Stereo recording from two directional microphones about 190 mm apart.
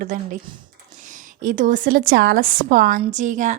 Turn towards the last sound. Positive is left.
turn(degrees=-40)  # may be behind; listen again after turning